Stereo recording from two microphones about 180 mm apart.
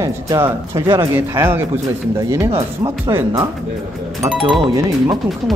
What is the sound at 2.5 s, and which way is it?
Speech, 30° right (ahead or behind).